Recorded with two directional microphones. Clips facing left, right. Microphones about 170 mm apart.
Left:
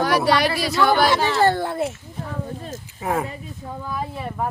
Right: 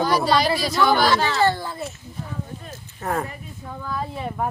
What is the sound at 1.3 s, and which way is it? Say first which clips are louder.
Speech: left 3 dB; 55° left (ahead or behind).